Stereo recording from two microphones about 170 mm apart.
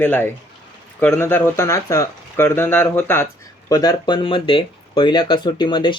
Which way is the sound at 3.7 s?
25° left (ahead or behind).